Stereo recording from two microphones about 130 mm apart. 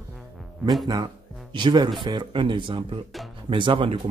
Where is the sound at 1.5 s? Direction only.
35° right (ahead or behind).